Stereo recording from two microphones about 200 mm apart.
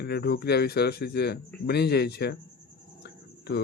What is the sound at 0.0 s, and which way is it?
Speech, 55° left (ahead or behind).